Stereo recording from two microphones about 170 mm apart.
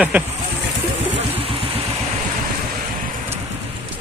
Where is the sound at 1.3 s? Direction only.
35° right (ahead or behind).